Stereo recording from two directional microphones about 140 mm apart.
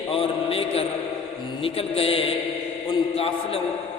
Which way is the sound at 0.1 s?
40° left (ahead or behind).